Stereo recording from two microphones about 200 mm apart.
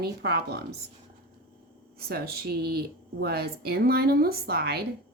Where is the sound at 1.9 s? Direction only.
50° right (ahead or behind).